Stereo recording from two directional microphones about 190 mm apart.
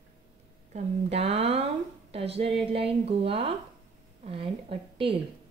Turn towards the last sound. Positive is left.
turn(degrees=-30)  # may be behind; listen again after turning